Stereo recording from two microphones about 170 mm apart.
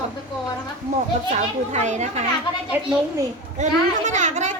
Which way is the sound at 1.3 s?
40° right (ahead or behind).